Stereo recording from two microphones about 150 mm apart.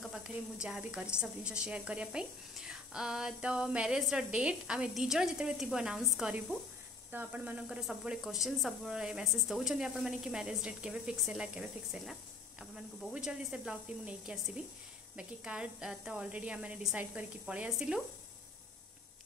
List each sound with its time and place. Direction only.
0.0 s a woman's voice: 5° right (ahead or behind)